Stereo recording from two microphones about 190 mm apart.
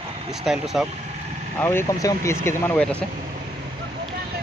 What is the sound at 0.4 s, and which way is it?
Speech, centre (ahead or behind).